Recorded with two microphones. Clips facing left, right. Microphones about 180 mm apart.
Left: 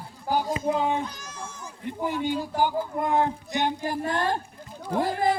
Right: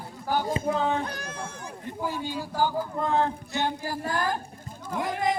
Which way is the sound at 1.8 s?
20° left (ahead or behind).